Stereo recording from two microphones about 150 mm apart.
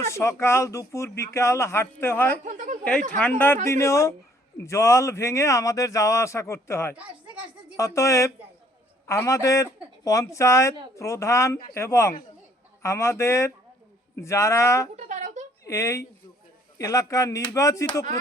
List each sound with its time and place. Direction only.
0.1 s speech: 20° left (ahead or behind)
2.4 s a woman's voice: 55° right (ahead or behind)
3.2 s a man's voice: 10° left (ahead or behind)
6.9 s speech: 10° right (ahead or behind)
7.8 s a man's voice: 20° left (ahead or behind)
14.9 s a sound: 50° right (ahead or behind)
15.6 s a man's voice: 20° left (ahead or behind)